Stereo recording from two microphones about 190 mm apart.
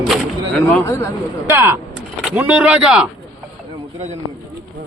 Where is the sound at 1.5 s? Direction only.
10° right (ahead or behind).